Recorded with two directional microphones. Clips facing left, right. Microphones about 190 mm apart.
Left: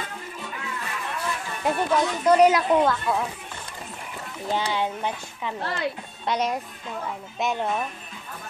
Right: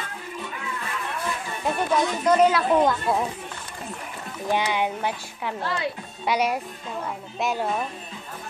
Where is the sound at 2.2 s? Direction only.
15° left (ahead or behind).